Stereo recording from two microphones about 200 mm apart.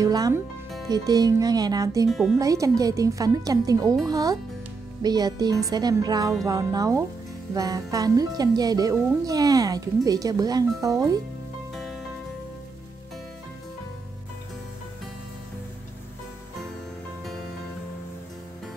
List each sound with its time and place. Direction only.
0.0 s speech: 15° right (ahead or behind)
0.8 s music: 20° right (ahead or behind)
2.0 s speech: centre (ahead or behind)
2.3 s speech: 15° right (ahead or behind)
5.0 s music: 20° right (ahead or behind)
6.4 s speech: 20° right (ahead or behind)
7.5 s music: 20° right (ahead or behind)
9.2 s speech: 15° right (ahead or behind)
11.7 s music: centre (ahead or behind)